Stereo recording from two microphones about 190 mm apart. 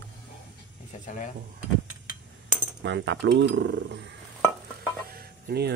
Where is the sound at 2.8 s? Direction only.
70° right (ahead or behind).